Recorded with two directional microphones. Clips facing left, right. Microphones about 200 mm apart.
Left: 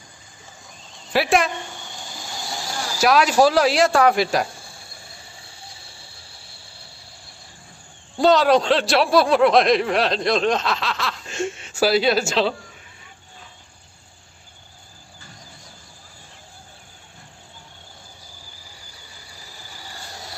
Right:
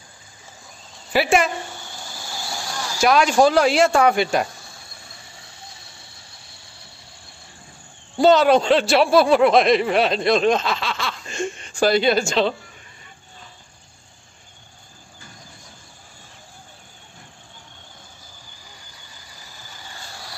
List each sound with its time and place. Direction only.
1.1 s speech: centre (ahead or behind)
8.2 s speech: centre (ahead or behind)
19.3 s vehicle: 35° left (ahead or behind)